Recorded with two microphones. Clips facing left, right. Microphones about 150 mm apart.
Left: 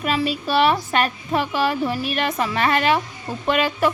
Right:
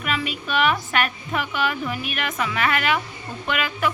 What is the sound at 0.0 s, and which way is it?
A woman's voice, 35° left (ahead or behind).